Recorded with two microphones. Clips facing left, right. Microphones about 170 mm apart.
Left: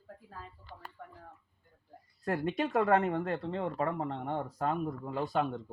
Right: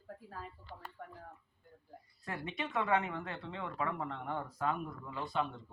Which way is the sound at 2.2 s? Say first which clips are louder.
Left 9 dB; 45° left (ahead or behind).